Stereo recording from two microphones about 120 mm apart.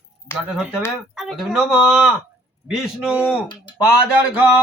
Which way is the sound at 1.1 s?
5° right (ahead or behind).